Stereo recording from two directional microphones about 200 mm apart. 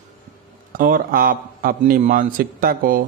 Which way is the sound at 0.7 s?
45° right (ahead or behind).